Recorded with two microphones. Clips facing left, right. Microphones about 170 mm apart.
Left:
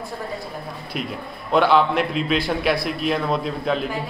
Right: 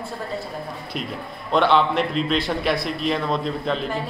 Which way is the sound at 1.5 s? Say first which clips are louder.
Left 1 dB; 5° left (ahead or behind).